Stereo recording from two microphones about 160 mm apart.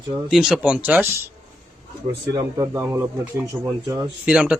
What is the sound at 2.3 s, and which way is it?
Speech, 20° right (ahead or behind).